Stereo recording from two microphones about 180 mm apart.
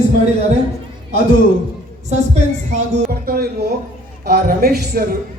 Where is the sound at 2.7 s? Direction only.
45° right (ahead or behind).